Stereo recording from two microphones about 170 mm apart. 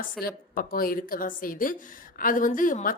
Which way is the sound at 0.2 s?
60° left (ahead or behind).